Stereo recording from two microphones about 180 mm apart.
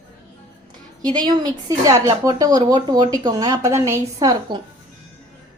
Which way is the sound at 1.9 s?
20° right (ahead or behind).